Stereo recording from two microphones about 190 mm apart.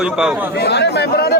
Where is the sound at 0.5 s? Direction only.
60° left (ahead or behind).